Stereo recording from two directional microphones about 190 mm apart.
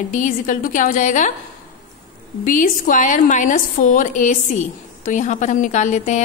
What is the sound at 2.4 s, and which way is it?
A woman's voice, 45° left (ahead or behind).